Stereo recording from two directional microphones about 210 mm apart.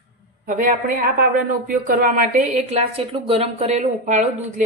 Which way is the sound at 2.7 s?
25° right (ahead or behind).